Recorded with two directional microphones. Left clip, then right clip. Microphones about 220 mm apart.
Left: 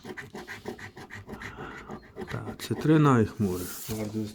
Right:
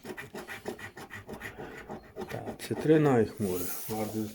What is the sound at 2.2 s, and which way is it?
Speech, 25° left (ahead or behind).